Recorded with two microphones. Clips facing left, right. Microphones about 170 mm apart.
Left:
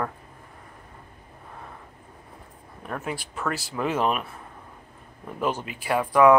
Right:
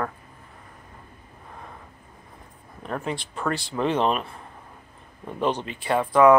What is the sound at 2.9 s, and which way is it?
Speech, 5° left (ahead or behind).